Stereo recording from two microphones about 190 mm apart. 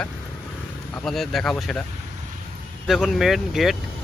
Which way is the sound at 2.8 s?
Centre (ahead or behind).